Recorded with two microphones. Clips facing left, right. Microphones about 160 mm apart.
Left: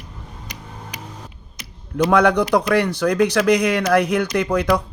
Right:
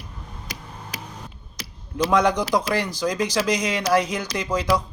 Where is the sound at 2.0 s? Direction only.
65° left (ahead or behind).